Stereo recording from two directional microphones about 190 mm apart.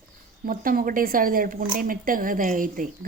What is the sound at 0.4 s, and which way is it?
Speech, 50° right (ahead or behind).